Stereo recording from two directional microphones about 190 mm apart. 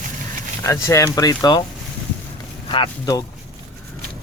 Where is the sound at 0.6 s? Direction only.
15° left (ahead or behind).